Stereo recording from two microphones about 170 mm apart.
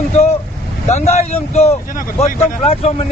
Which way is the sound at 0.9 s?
40° left (ahead or behind).